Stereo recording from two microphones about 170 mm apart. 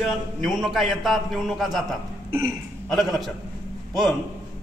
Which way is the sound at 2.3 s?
15° right (ahead or behind).